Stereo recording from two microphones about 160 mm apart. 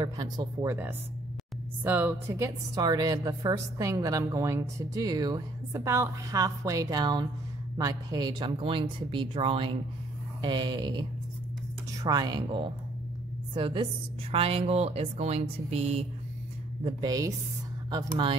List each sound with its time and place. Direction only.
0.0 s a woman's voice: 25° right (ahead or behind)
1.9 s a woman's voice: 10° right (ahead or behind); by 16.1 s 40° right (ahead or behind)
16.8 s a woman's voice: 25° right (ahead or behind)